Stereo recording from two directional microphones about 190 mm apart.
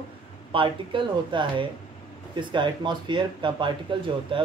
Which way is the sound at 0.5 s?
25° right (ahead or behind).